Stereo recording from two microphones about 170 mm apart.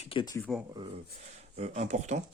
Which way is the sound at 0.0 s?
30° left (ahead or behind).